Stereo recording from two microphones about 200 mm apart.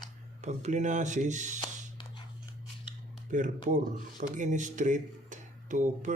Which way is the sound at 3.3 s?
40° right (ahead or behind).